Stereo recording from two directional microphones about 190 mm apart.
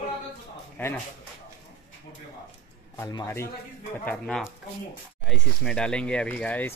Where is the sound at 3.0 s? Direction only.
15° left (ahead or behind).